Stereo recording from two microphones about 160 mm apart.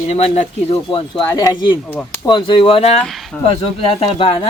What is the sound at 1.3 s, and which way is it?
Speech, 20° left (ahead or behind).